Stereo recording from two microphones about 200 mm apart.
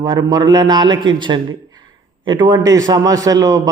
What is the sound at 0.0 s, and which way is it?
A man's voice, 20° right (ahead or behind).